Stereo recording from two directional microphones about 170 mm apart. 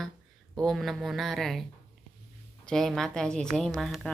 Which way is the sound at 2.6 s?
Centre (ahead or behind).